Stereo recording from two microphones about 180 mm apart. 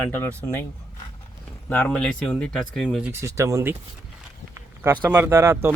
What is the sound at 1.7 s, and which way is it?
Speech, 5° left (ahead or behind).